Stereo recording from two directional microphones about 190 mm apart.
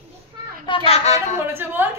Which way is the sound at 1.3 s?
10° right (ahead or behind).